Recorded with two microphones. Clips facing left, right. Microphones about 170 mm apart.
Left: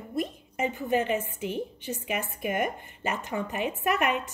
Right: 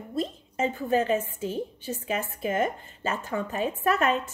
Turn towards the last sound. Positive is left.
turn(degrees=15)  # may be behind; listen again after turning